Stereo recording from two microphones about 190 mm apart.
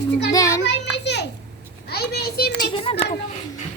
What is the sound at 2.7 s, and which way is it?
Speech, 30° left (ahead or behind).